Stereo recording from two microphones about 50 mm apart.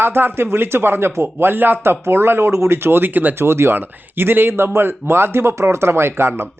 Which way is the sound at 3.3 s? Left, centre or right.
Right.